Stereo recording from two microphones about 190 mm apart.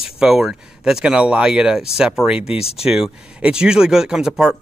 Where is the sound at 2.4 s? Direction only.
30° left (ahead or behind).